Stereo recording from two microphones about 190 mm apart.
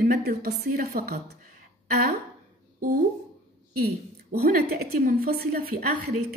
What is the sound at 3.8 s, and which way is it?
A woman's voice, 50° right (ahead or behind).